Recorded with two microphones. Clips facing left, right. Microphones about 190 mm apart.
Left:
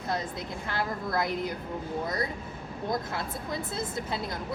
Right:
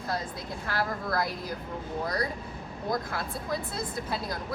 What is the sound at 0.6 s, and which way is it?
Speech, 20° left (ahead or behind).